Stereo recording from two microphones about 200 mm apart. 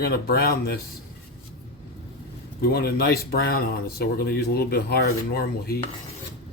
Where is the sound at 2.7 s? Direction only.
50° left (ahead or behind).